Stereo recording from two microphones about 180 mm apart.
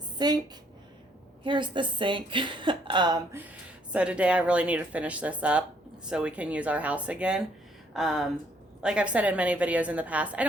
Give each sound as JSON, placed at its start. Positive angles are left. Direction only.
{"t": 0.2, "sound": "a woman's voice", "side_deg": -25}
{"t": 1.5, "sound": "a woman's voice", "side_deg": -25}
{"t": 3.9, "sound": "speech", "side_deg": -5}